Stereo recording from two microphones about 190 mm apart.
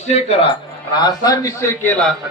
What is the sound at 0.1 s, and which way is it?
Speech, 35° left (ahead or behind).